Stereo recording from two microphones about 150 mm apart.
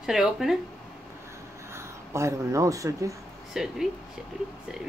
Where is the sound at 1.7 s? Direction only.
20° right (ahead or behind).